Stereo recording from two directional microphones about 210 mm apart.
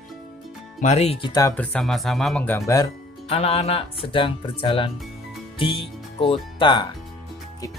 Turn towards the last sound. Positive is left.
turn(degrees=20)  # may be behind; listen again after turning